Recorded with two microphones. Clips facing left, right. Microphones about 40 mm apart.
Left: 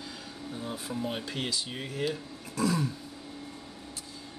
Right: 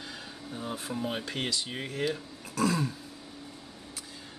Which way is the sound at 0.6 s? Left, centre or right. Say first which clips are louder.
Right 1 dB; centre.